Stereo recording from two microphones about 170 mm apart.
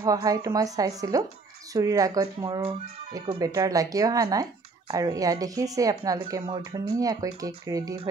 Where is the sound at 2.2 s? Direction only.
30° right (ahead or behind).